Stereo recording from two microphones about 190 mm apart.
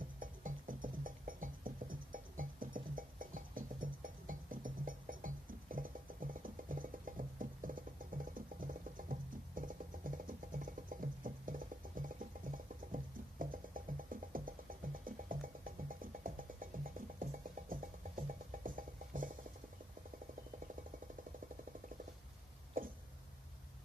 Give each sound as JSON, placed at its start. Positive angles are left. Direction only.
{"t": 0.2, "sound": "music", "side_deg": -45}
{"t": 22.8, "sound": "hiccup", "side_deg": -45}